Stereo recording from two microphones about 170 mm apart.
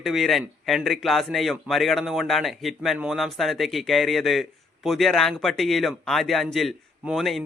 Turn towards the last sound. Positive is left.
turn(degrees=0)  # may be behind; listen again after turning